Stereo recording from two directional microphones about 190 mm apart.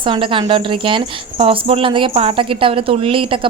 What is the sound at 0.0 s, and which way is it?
Speech, 25° right (ahead or behind).